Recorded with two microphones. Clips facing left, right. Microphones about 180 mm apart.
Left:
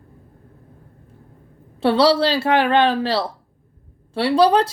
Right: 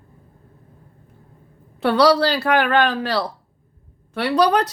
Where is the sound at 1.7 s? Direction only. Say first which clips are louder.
Even; 25° left (ahead or behind).